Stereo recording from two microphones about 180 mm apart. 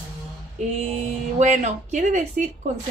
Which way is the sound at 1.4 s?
40° right (ahead or behind).